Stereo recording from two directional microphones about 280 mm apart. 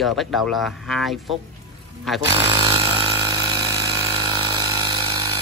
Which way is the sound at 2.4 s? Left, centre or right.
Centre.